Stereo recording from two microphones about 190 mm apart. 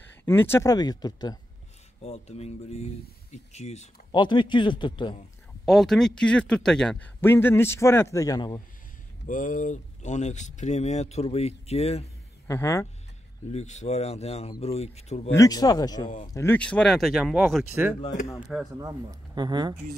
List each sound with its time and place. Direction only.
0.1 s a man's voice: 10° left (ahead or behind)
2.0 s speech: 35° left (ahead or behind)
4.1 s a man's voice: 25° left (ahead or behind)
5.7 s a man's voice: centre (ahead or behind); by 8.6 s 20° left (ahead or behind)
9.2 s speech: 45° left (ahead or behind)
12.4 s a man's voice: 15° left (ahead or behind)
13.5 s speech: 35° left (ahead or behind)
15.3 s a man's voice: 20° left (ahead or behind)
16.3 s speech: 10° left (ahead or behind)
18.7 s speech: 20° right (ahead or behind)